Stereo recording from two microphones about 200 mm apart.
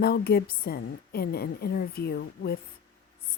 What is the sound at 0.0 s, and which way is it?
A woman's voice, 50° left (ahead or behind).